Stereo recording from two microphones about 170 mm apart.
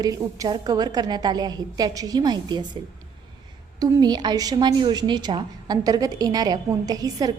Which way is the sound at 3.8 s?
25° right (ahead or behind).